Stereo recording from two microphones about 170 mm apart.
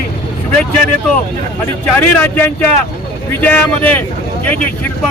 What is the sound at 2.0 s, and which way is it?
Speech, 10° left (ahead or behind).